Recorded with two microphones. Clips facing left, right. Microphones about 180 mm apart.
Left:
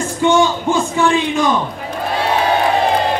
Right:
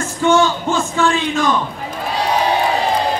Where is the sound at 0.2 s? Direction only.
15° left (ahead or behind).